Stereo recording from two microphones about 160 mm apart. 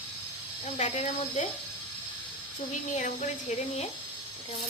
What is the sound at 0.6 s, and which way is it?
Speech, 40° left (ahead or behind).